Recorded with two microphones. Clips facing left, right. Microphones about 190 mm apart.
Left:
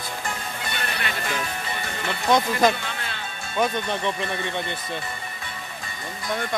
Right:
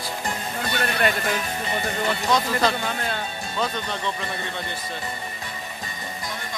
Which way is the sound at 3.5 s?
15° left (ahead or behind).